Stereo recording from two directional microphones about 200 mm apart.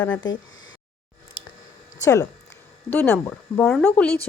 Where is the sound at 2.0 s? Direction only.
15° left (ahead or behind).